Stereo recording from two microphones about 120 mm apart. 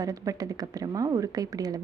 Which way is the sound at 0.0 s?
30° right (ahead or behind).